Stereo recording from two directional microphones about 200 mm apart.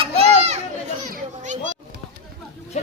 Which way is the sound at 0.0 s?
30° right (ahead or behind).